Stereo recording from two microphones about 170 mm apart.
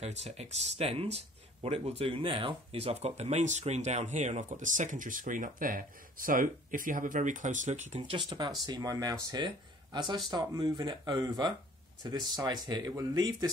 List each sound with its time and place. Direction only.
0.0 s speech: 40° right (ahead or behind)
8.3 s speech: 25° right (ahead or behind)